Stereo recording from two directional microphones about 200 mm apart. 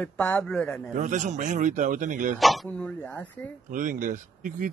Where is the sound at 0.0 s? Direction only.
5° left (ahead or behind).